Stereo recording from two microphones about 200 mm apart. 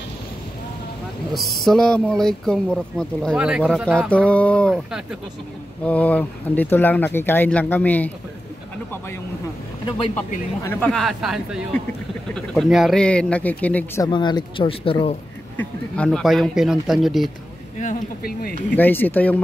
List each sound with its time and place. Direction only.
1.3 s speech: centre (ahead or behind)
10.1 s speech: 10° left (ahead or behind)
14.0 s speech: 20° left (ahead or behind)
15.5 s speech: 5° left (ahead or behind)
17.7 s speech: 45° left (ahead or behind)
18.8 s speech: 10° left (ahead or behind)